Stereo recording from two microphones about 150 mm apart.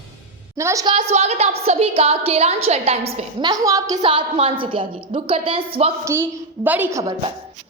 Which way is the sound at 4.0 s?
35° right (ahead or behind).